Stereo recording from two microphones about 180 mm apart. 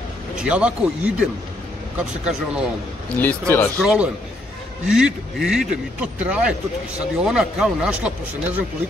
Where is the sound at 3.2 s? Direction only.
10° left (ahead or behind).